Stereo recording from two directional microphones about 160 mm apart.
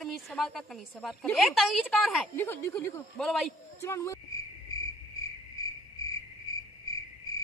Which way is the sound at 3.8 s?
20° left (ahead or behind).